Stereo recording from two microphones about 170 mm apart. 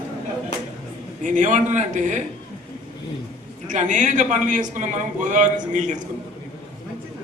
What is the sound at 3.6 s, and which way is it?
A man's voice, 45° right (ahead or behind).